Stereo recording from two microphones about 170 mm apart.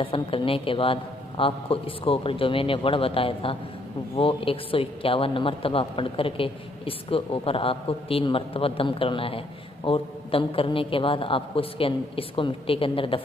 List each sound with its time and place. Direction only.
0.0 s a man's voice: 30° left (ahead or behind)